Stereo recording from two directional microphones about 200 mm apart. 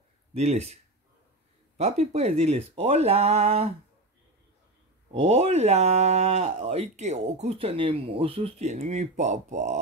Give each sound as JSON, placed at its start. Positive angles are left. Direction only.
{"t": 0.3, "sound": "speech", "side_deg": -30}
{"t": 1.8, "sound": "speech", "side_deg": -35}
{"t": 5.1, "sound": "speech", "side_deg": -30}